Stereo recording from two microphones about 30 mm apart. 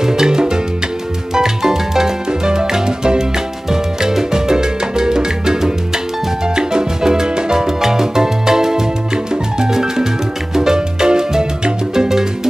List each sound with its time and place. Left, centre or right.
0.0 s music: centre
3.7 s salsa music: centre
6.4 s music: right